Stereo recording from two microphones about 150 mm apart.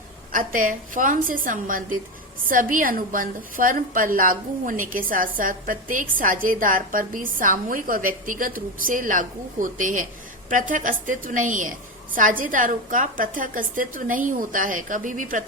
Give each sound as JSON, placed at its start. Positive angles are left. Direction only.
{"t": 0.3, "sound": "a woman's voice", "side_deg": -65}